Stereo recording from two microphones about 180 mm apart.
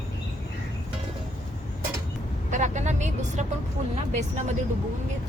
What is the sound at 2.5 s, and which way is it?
Vehicle, 40° right (ahead or behind).